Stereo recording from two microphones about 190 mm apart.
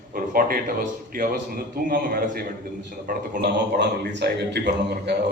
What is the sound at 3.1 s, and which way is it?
A man's voice, 60° right (ahead or behind).